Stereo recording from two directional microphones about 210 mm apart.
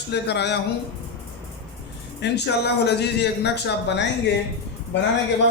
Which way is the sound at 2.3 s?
55° left (ahead or behind).